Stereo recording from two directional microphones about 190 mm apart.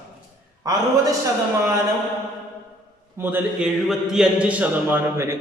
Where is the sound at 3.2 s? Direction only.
10° right (ahead or behind).